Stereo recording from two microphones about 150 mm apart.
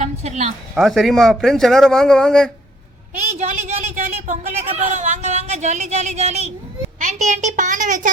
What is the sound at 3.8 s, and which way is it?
A child's voice, 50° right (ahead or behind).